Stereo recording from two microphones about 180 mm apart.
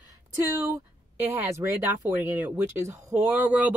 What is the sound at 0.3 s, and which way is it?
Speech, 15° right (ahead or behind).